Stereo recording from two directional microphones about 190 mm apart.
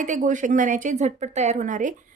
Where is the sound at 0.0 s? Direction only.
40° right (ahead or behind).